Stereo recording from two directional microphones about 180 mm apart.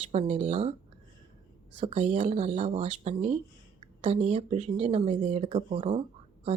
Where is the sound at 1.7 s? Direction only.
35° right (ahead or behind).